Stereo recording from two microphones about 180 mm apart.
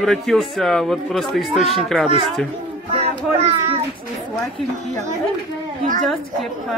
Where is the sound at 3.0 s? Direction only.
35° right (ahead or behind).